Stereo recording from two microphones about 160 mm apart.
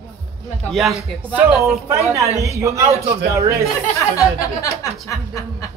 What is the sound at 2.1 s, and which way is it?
A woman's voice, 20° right (ahead or behind).